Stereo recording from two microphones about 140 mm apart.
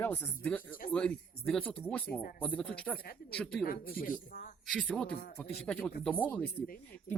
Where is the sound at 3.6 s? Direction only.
90° left.